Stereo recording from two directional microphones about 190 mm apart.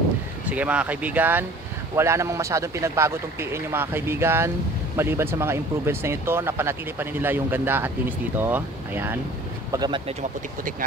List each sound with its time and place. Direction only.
0.5 s speech: 5° right (ahead or behind)
9.7 s speech: 20° right (ahead or behind)